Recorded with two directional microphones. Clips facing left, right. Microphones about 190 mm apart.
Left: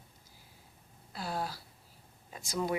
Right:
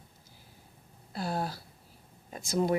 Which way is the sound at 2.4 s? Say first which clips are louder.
Right 6 dB; 25° right (ahead or behind).